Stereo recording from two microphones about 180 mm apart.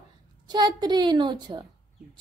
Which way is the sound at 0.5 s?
25° right (ahead or behind).